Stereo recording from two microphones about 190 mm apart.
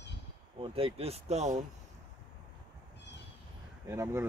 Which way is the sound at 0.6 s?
30° right (ahead or behind).